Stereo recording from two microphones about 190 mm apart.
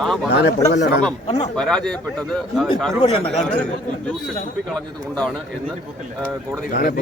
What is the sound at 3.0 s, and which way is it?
Speech, 35° left (ahead or behind).